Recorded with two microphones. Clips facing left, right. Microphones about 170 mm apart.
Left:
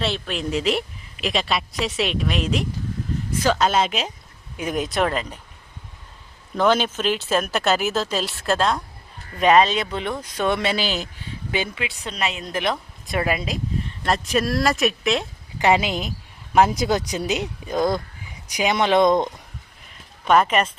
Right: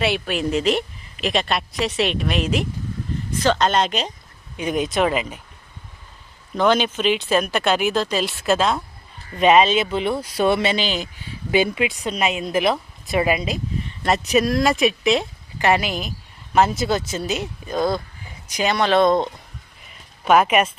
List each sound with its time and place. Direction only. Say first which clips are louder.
0.0 s a woman's voice: right 4 dB; 5° right (ahead or behind)
6.6 s a woman's voice: right 1 dB; 5° left (ahead or behind)
11.5 s a woman's voice: right 8 dB; 15° right (ahead or behind)
15.5 s speech: even; 15° left (ahead or behind)
20.2 s speech: right 2 dB; 5° right (ahead or behind)